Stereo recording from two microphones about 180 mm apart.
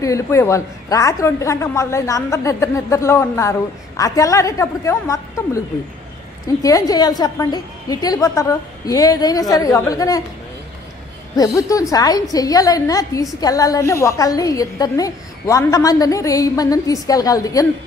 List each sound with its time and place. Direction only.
0.0 s a woman's voice: 15° left (ahead or behind)
6.6 s a woman's voice: 20° left (ahead or behind)
11.3 s a woman's voice: 20° left (ahead or behind)